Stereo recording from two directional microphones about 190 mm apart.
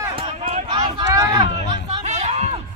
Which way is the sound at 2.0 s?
35° right (ahead or behind).